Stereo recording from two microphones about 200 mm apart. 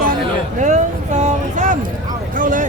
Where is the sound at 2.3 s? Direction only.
40° right (ahead or behind).